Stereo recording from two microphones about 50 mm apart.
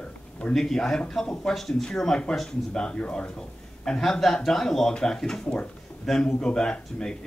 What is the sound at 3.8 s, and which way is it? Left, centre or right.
Speech, centre.